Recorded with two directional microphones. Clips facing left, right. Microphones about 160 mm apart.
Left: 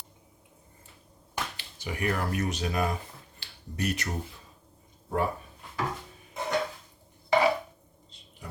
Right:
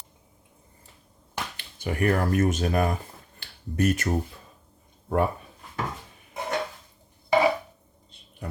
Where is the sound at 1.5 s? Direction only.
55° right (ahead or behind).